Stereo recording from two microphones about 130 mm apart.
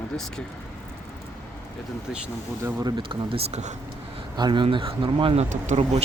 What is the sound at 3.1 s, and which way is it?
Speech, 45° right (ahead or behind).